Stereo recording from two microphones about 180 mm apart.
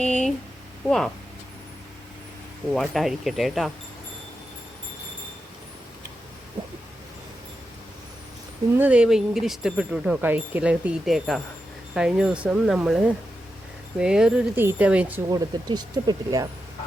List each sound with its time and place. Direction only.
0.0 s speech: 5° left (ahead or behind)
2.7 s speech: centre (ahead or behind)
8.8 s speech: 5° right (ahead or behind)
15.3 s speech: 20° right (ahead or behind)